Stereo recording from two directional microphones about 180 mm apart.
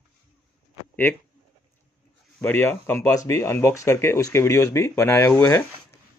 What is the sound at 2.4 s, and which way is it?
Speech, 10° left (ahead or behind).